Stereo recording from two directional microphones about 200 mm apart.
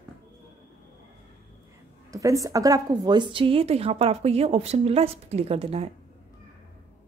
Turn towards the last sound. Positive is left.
turn(degrees=-30)  # may be behind; listen again after turning